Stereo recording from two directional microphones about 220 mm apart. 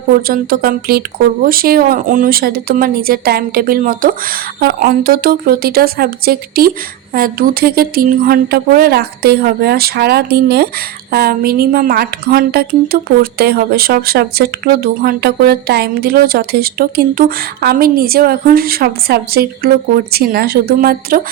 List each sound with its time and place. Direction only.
0.3 s speech: 40° right (ahead or behind)